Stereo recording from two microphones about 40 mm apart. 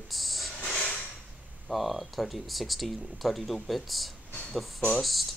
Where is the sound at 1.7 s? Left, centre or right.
Centre.